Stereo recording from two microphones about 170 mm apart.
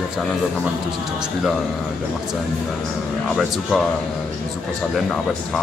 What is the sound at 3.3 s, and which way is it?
Speech, centre (ahead or behind).